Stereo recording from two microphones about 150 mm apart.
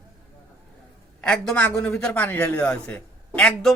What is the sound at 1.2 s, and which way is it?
A man's voice, 5° left (ahead or behind).